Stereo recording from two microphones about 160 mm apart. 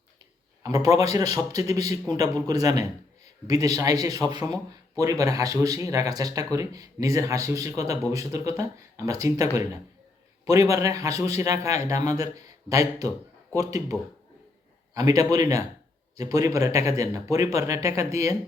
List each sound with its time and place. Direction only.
0.6 s speech: 20° right (ahead or behind)
14.9 s speech: 20° right (ahead or behind)